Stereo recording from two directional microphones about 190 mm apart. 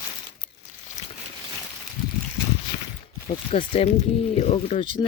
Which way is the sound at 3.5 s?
30° left (ahead or behind).